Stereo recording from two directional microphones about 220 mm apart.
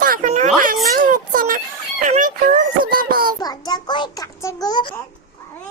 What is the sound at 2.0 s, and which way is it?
Music, 35° right (ahead or behind).